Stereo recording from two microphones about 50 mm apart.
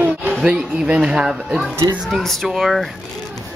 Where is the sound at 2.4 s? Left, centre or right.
Centre.